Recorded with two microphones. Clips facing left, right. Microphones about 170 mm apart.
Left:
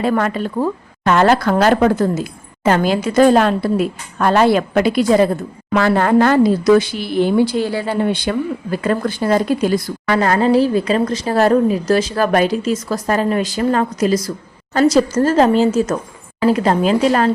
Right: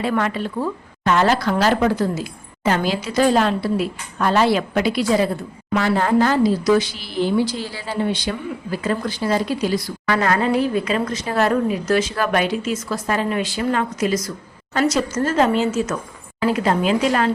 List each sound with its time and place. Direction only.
0.0 s a woman's voice: 45° left (ahead or behind)
5.7 s speech: 60° left (ahead or behind)
10.1 s a woman's voice: 30° left (ahead or behind)